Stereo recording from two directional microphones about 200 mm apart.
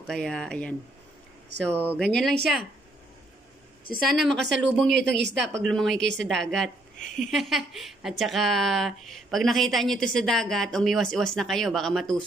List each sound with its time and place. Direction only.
0.0 s a woman's voice: 5° left (ahead or behind)
4.1 s a woman's voice: centre (ahead or behind)
5.0 s speech: 60° right (ahead or behind)
5.6 s a woman's voice: centre (ahead or behind)
5.9 s speech: 65° right (ahead or behind)
6.2 s a woman's voice: centre (ahead or behind)